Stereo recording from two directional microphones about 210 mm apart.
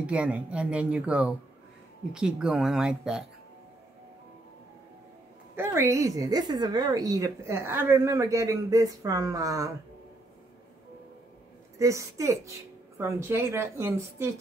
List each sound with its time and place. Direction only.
0.0 s speech: 5° right (ahead or behind)
5.6 s a woman's voice: 15° right (ahead or behind)
11.8 s a woman's voice: 15° right (ahead or behind)